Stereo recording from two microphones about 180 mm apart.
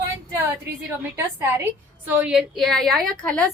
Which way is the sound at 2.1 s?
10° right (ahead or behind).